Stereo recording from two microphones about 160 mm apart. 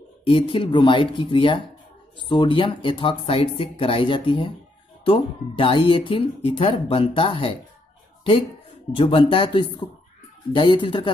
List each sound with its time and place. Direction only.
0.2 s speech: 35° left (ahead or behind)
8.9 s speech: 35° left (ahead or behind)